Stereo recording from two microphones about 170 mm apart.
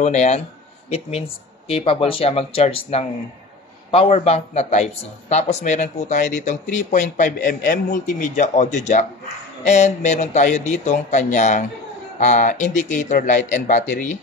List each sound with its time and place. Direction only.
0.0 s speech: 40° left (ahead or behind)
1.7 s speech: 35° left (ahead or behind)